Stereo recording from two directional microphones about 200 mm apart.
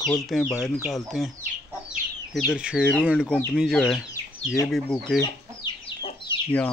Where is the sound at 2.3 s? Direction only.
5° right (ahead or behind).